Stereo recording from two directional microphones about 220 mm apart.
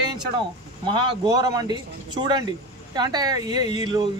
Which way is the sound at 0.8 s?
20° right (ahead or behind).